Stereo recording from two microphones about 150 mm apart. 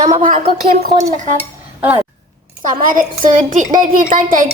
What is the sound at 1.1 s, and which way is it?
Dishes, 55° right (ahead or behind).